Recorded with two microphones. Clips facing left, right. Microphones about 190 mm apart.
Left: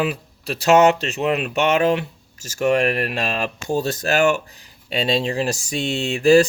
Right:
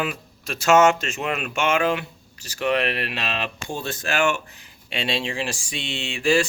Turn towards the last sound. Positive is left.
turn(degrees=40)  # may be behind; listen again after turning